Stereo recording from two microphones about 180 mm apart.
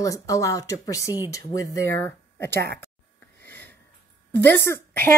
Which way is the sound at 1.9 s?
10° left (ahead or behind).